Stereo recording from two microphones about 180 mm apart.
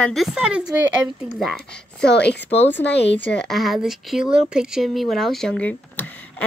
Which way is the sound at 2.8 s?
75° left (ahead or behind).